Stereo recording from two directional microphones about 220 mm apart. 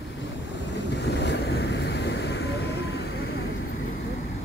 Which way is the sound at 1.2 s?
50° left (ahead or behind).